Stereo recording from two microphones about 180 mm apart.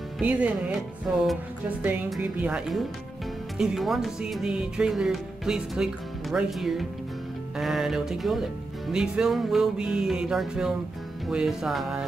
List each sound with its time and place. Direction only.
0.2 s speech: 5° right (ahead or behind)